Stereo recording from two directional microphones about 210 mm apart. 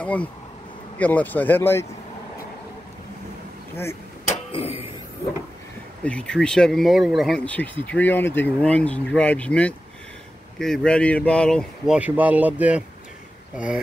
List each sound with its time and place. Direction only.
0.0 s speech: 5° left (ahead or behind)
4.5 s a sound: 30° left (ahead or behind)
6.0 s speech: 5° left (ahead or behind)